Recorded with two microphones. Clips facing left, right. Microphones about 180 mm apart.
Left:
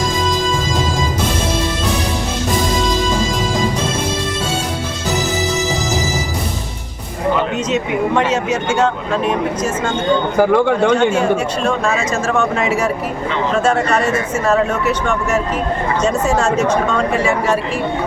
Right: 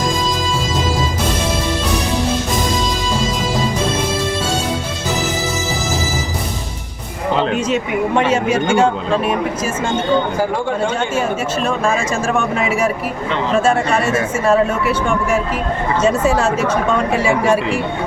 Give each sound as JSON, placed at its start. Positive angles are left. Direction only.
{"t": 8.3, "sound": "speech", "side_deg": -10}
{"t": 10.3, "sound": "speech", "side_deg": 65}
{"t": 13.6, "sound": "speech", "side_deg": -10}